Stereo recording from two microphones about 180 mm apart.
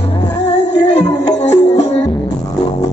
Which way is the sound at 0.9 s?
35° left (ahead or behind).